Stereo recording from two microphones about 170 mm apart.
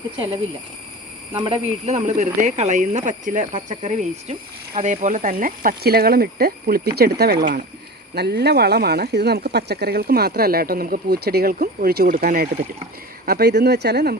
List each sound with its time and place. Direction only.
1.3 s speech: 30° right (ahead or behind); by 12.5 s 60° right (ahead or behind)
13.2 s speech: 70° right (ahead or behind)